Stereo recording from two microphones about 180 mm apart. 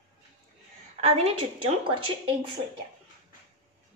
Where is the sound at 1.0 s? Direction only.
35° right (ahead or behind).